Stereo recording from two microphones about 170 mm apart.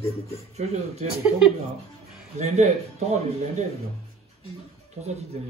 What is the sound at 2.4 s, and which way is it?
Speech, 40° right (ahead or behind).